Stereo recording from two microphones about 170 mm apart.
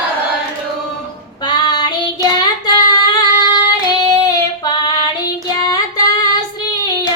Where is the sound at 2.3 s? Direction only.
25° left (ahead or behind).